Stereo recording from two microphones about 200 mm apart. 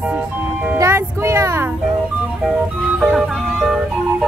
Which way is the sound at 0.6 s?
10° right (ahead or behind).